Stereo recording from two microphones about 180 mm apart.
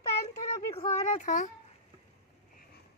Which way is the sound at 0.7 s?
40° left (ahead or behind).